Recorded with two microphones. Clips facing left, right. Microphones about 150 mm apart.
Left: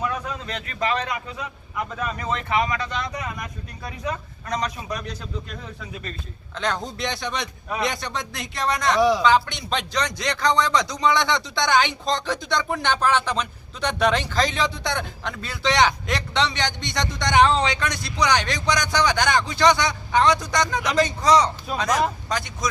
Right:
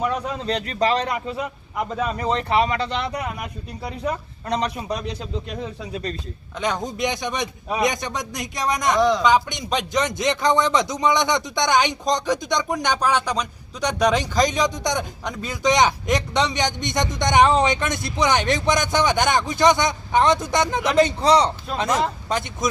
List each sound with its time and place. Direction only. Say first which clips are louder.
0.4 s speech: right 6 dB; 35° right (ahead or behind)
2.1 s speech: right 3 dB; 30° right (ahead or behind)
3.1 s a man's voice: right 3 dB; 10° right (ahead or behind)
4.4 s speech: right 3 dB; 30° right (ahead or behind)
6.6 s a man's voice: right 3 dB; 15° right (ahead or behind)
9.0 s a man's voice: even; 5° left (ahead or behind)
9.2 s speech: right 1 dB; 15° right (ahead or behind)